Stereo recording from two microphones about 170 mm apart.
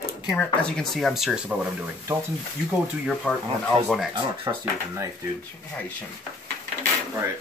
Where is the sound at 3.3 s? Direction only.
5° right (ahead or behind).